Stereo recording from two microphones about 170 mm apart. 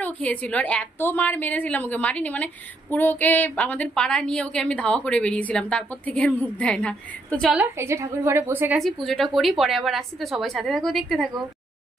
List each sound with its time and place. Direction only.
0.0 s a woman's voice: 10° left (ahead or behind)
7.5 s a woman's voice: 15° right (ahead or behind)
9.0 s a woman's voice: centre (ahead or behind)